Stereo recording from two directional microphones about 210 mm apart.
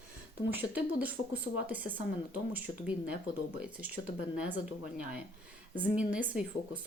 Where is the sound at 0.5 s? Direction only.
10° right (ahead or behind).